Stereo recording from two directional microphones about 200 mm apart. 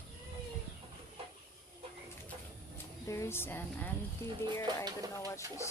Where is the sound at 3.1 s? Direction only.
15° left (ahead or behind).